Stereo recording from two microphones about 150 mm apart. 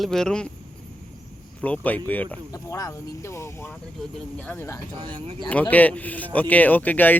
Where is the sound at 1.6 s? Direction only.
10° left (ahead or behind).